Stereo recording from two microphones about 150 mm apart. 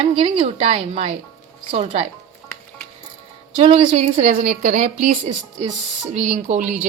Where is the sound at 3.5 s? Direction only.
45° right (ahead or behind).